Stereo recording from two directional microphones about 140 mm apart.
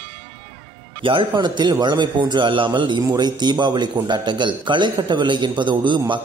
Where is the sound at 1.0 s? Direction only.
40° right (ahead or behind).